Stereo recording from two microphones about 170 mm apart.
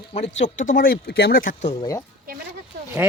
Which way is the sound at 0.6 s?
55° left (ahead or behind).